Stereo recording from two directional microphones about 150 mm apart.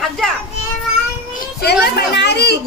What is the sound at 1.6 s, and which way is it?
Speech, 90° left.